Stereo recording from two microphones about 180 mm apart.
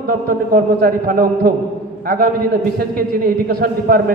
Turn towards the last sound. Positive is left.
turn(degrees=-60)  # may be behind; listen again after turning